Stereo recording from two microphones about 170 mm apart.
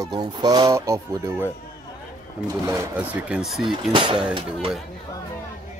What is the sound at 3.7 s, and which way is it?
Speech, 30° right (ahead or behind).